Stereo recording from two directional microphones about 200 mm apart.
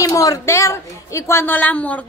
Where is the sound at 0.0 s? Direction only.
15° left (ahead or behind).